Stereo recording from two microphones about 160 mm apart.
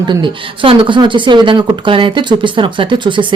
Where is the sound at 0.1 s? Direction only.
30° right (ahead or behind).